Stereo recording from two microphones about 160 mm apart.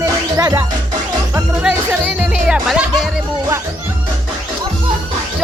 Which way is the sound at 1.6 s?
10° right (ahead or behind).